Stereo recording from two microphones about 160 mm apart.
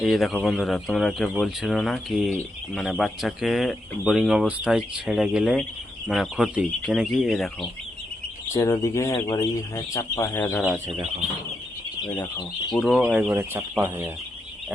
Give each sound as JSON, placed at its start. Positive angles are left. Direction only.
{"t": 0.0, "sound": "speech", "side_deg": 0}
{"t": 8.5, "sound": "speech", "side_deg": 20}
{"t": 10.6, "sound": "speech", "side_deg": -5}
{"t": 12.7, "sound": "speech", "side_deg": 0}